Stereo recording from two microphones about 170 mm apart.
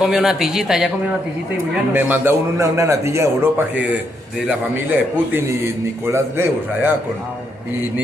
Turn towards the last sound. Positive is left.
turn(degrees=-10)  # may be behind; listen again after turning